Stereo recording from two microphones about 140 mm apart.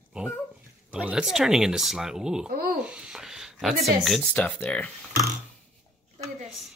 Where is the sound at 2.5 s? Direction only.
90° right.